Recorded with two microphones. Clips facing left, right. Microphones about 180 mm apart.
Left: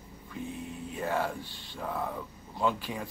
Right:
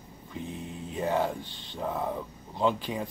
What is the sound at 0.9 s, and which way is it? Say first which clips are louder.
Speech: right 4 dB; 20° right (ahead or behind).